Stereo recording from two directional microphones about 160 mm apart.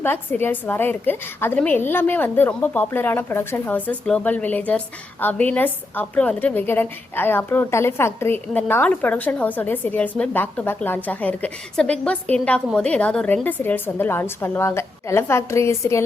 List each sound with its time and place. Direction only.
0.0 s a woman's voice: 15° left (ahead or behind)